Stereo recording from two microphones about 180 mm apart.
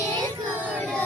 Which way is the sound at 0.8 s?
10° left (ahead or behind).